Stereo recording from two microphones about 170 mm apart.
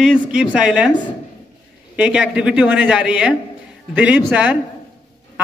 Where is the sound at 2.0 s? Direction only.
5° right (ahead or behind).